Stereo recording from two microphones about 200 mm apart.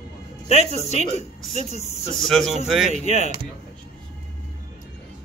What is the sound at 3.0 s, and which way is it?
Speech, 35° left (ahead or behind).